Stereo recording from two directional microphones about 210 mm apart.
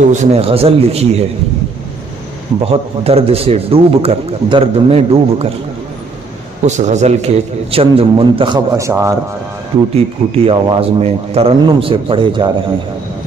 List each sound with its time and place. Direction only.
0.0 s a man's voice: 35° right (ahead or behind)
2.6 s a man's voice: 30° right (ahead or behind)
6.6 s a man's voice: 35° right (ahead or behind); by 9.1 s 15° right (ahead or behind)
10.3 s a man's voice: 25° right (ahead or behind)